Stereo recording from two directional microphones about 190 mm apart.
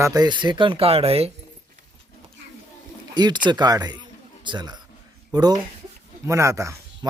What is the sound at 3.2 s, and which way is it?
Speech, 25° right (ahead or behind).